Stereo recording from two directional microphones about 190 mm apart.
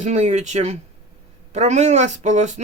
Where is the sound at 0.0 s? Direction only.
35° right (ahead or behind).